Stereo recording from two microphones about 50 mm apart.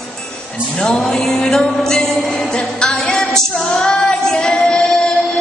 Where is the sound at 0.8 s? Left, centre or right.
Centre.